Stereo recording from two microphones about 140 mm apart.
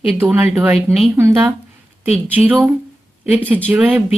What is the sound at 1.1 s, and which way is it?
Speech, 20° right (ahead or behind).